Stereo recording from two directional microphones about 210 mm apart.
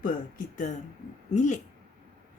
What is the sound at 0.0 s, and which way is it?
Speech, 40° left (ahead or behind).